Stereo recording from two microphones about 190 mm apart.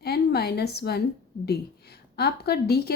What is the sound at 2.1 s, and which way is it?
Speech, 55° left (ahead or behind).